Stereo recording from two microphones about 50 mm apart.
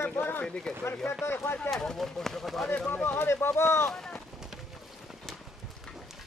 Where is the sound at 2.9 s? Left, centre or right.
Left.